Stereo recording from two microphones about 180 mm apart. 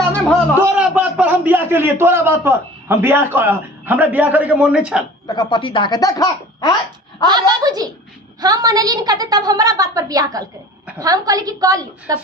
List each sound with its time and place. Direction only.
0.8 s a man's voice: 5° right (ahead or behind)
5.2 s speech: 25° left (ahead or behind)
7.3 s a woman's voice: 25° right (ahead or behind)